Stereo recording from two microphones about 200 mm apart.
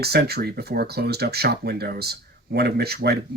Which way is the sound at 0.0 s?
50° right (ahead or behind).